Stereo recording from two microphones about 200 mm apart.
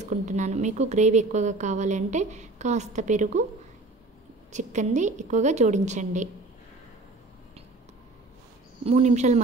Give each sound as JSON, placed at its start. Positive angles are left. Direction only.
{"t": 0.0, "sound": "a woman's voice", "side_deg": -40}
{"t": 4.5, "sound": "a woman's voice", "side_deg": -35}
{"t": 8.8, "sound": "a woman's voice", "side_deg": -35}